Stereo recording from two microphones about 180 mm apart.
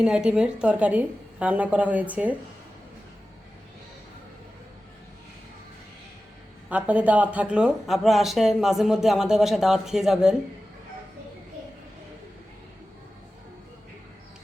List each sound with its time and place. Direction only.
0.0 s a woman's voice: 5° right (ahead or behind)
6.7 s speech: 10° right (ahead or behind)